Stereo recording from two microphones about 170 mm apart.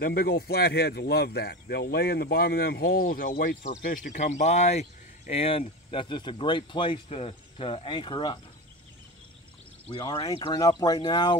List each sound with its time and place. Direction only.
0.0 s speech: 65° left (ahead or behind); by 8.4 s 25° left (ahead or behind)
9.8 s speech: 25° left (ahead or behind)